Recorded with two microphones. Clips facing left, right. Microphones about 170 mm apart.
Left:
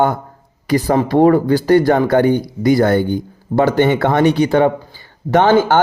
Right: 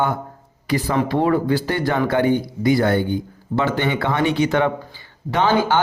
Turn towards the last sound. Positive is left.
turn(degrees=50)  # may be behind; listen again after turning